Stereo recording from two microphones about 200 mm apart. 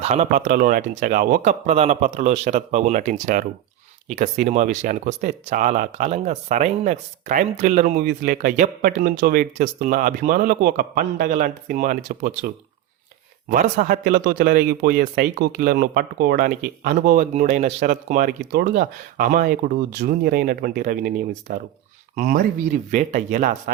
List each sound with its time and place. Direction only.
0.0 s speech: 35° right (ahead or behind)
13.5 s speech: 40° right (ahead or behind)